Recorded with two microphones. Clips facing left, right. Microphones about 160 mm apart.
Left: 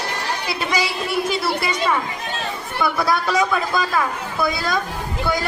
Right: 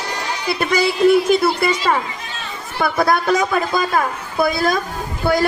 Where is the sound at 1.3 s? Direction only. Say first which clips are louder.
Right 6 dB; 50° right (ahead or behind).